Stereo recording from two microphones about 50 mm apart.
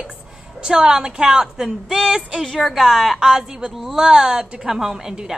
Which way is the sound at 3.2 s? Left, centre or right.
Centre.